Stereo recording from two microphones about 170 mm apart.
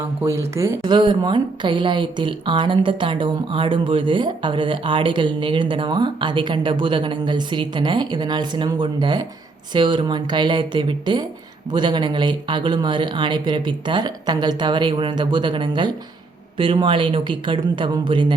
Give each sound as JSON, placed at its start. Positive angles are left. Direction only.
{"t": 0.2, "sound": "a woman's voice", "side_deg": -15}